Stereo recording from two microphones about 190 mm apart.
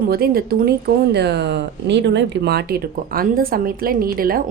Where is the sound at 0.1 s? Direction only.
55° right (ahead or behind).